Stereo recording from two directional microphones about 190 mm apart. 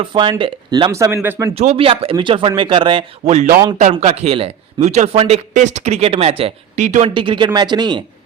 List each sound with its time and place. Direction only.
0.0 s speech: 25° right (ahead or behind)
1.5 s speech: 30° right (ahead or behind)
7.1 s speech: 25° right (ahead or behind)